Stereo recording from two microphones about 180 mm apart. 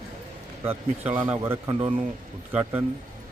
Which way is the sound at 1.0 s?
10° right (ahead or behind).